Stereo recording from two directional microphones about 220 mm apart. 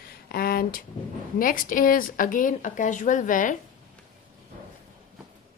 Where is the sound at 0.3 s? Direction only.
45° left (ahead or behind).